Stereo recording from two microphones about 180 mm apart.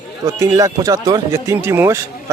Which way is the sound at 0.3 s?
20° right (ahead or behind).